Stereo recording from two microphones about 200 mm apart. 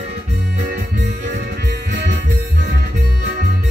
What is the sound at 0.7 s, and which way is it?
Music, 55° right (ahead or behind).